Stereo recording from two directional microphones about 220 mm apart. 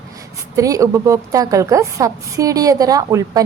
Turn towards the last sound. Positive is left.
turn(degrees=-15)  # may be behind; listen again after turning